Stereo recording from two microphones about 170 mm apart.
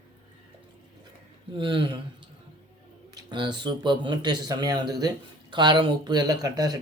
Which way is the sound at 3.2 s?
25° right (ahead or behind).